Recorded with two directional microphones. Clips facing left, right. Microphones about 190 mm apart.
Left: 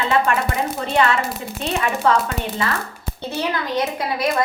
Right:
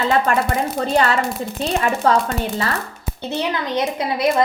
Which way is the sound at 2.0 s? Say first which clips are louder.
Right 1 dB; 40° right (ahead or behind).